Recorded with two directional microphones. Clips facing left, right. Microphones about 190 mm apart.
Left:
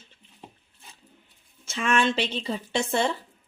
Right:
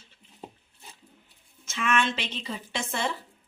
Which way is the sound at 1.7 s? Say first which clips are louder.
Left 3 dB; 35° left (ahead or behind).